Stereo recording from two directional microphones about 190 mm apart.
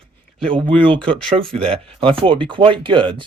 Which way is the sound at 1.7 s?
30° right (ahead or behind).